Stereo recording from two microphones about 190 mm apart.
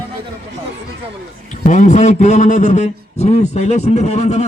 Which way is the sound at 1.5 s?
40° left (ahead or behind).